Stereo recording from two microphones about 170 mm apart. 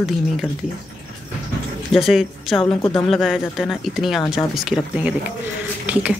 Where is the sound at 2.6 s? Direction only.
30° left (ahead or behind).